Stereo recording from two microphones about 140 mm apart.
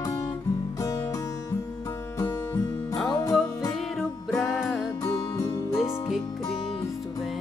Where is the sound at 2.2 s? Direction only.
25° left (ahead or behind).